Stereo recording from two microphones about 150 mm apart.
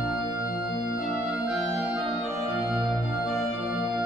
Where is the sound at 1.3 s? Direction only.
10° right (ahead or behind).